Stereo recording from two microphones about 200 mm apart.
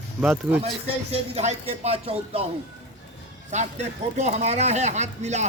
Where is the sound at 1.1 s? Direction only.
30° right (ahead or behind).